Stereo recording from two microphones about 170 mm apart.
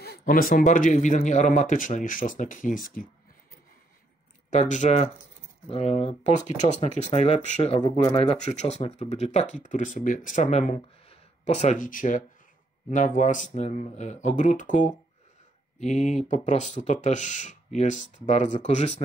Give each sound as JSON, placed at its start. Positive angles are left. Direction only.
{"t": 0.2, "sound": "speech", "side_deg": 55}
{"t": 4.5, "sound": "speech", "side_deg": 45}